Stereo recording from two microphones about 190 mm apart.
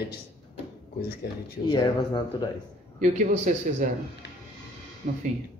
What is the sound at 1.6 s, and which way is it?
Speech, 20° left (ahead or behind).